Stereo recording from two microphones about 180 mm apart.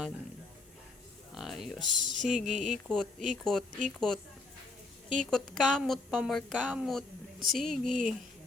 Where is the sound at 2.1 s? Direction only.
40° right (ahead or behind).